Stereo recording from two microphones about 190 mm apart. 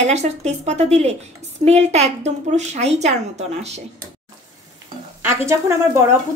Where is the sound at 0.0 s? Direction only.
35° right (ahead or behind).